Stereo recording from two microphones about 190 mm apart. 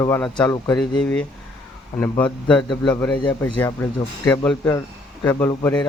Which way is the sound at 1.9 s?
15° left (ahead or behind).